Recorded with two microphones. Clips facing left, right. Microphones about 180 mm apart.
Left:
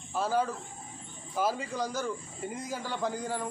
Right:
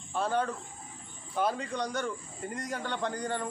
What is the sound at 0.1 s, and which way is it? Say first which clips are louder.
A man's voice: left 1 dB; 5° left (ahead or behind).